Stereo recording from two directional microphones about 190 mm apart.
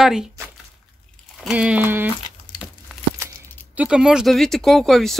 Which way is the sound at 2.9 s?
5° right (ahead or behind).